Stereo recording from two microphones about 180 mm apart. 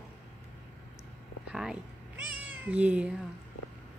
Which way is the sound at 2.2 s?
5° right (ahead or behind).